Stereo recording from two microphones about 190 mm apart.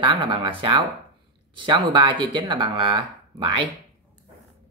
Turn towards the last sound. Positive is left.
turn(degrees=-25)  # may be behind; listen again after turning